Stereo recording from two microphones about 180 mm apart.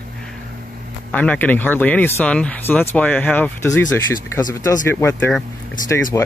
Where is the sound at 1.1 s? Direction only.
10° left (ahead or behind).